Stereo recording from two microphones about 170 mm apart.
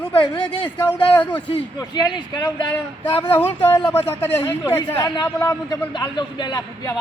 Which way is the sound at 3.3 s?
10° left (ahead or behind).